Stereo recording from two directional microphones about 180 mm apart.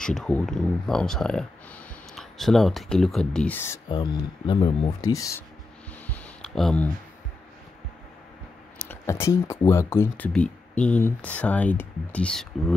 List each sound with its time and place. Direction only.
0.0 s speech: 5° left (ahead or behind)
3.9 s speech: 25° left (ahead or behind)
5.1 s speech: 20° left (ahead or behind)
6.0 s a sound: 10° left (ahead or behind)
8.7 s speech: 10° left (ahead or behind)